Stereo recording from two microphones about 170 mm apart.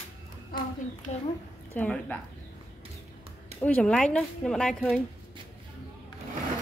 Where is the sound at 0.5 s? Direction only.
60° left (ahead or behind).